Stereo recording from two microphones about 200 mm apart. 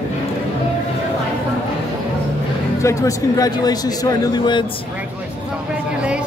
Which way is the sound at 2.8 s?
15° left (ahead or behind).